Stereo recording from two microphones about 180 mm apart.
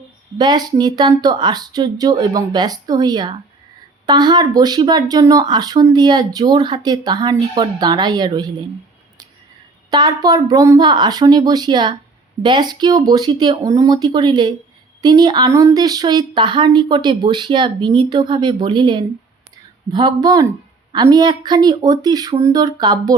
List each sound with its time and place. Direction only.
0.3 s speech: 25° right (ahead or behind)
9.9 s speech: 25° right (ahead or behind)